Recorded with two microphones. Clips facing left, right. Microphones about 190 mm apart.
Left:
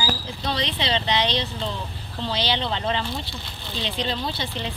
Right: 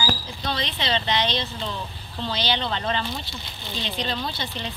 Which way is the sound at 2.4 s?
25° left (ahead or behind).